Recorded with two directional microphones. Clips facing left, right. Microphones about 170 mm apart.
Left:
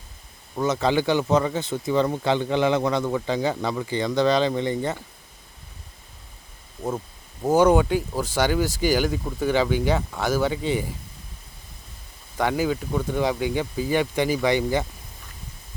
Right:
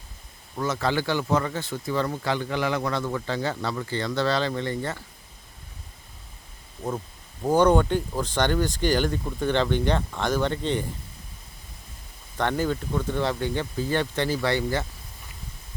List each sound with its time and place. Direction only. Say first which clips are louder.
0.5 s speech: left 4 dB; 20° left (ahead or behind)
7.4 s speech: left 2 dB; 5° left (ahead or behind)
12.4 s speech: left 2 dB; 10° left (ahead or behind)